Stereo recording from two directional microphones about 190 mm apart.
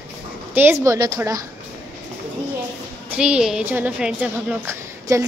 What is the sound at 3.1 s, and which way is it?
A woman's voice, 5° right (ahead or behind).